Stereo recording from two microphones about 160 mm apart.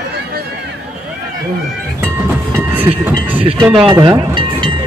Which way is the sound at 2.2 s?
10° right (ahead or behind).